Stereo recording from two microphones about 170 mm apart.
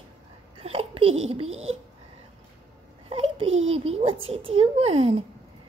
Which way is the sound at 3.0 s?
35° right (ahead or behind).